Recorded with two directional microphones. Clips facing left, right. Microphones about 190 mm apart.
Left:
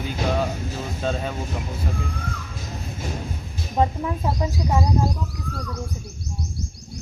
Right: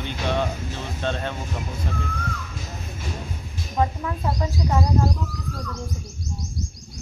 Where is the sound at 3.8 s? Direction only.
25° left (ahead or behind).